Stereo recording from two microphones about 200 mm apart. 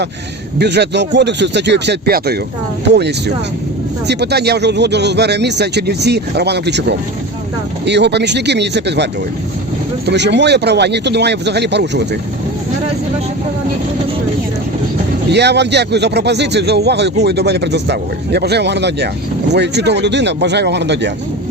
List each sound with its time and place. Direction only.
0.6 s speech: 55° right (ahead or behind)
10.1 s speech: 60° right (ahead or behind)
15.3 s speech: 55° right (ahead or behind)